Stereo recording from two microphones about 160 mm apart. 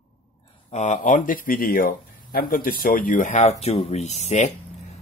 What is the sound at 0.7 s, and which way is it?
Speech, 45° left (ahead or behind).